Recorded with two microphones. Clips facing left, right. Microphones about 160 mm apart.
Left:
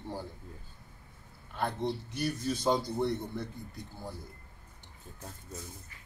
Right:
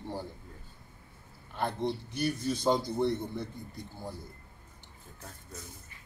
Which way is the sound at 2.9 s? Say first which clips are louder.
Right 2 dB; 20° right (ahead or behind).